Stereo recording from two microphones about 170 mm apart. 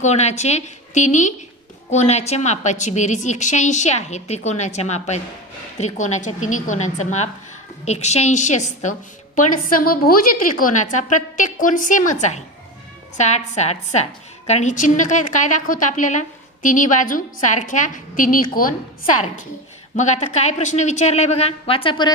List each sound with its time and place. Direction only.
0.0 s a woman's voice: 40° left (ahead or behind)
20.0 s a woman's voice: 45° left (ahead or behind); by 22.1 s 30° left (ahead or behind)